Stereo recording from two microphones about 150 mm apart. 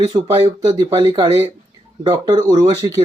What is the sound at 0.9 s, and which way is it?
Speech, 30° right (ahead or behind).